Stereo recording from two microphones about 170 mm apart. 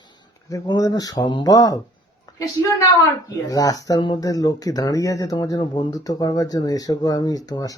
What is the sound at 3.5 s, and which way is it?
Speech, 20° left (ahead or behind).